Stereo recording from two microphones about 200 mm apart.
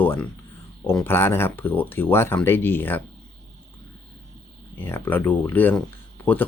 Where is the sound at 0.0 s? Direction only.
10° left (ahead or behind).